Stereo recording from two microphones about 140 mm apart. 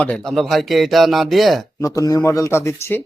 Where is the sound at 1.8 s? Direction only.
25° left (ahead or behind).